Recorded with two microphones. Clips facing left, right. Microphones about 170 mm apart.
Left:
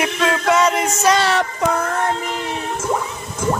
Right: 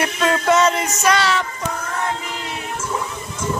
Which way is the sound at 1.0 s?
40° left (ahead or behind).